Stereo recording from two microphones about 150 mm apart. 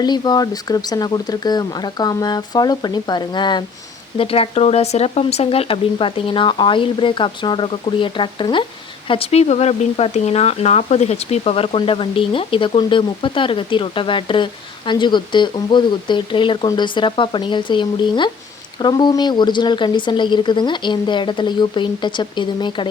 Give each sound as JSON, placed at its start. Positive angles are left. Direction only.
{"t": 0.0, "sound": "speech", "side_deg": 30}